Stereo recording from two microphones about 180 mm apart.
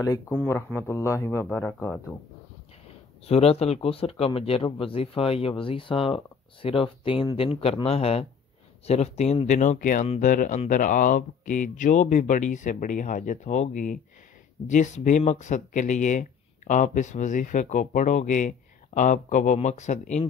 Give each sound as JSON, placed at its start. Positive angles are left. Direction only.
{"t": 0.3, "sound": "speech", "side_deg": 10}
{"t": 3.3, "sound": "speech", "side_deg": 35}